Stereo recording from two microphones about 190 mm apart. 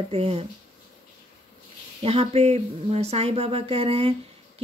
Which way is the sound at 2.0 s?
30° right (ahead or behind).